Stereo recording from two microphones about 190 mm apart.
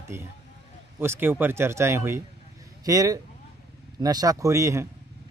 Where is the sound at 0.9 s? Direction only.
10° right (ahead or behind).